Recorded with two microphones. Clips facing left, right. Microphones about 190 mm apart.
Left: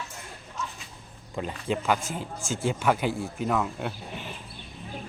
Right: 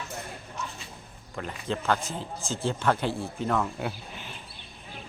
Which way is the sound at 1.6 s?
10° left (ahead or behind).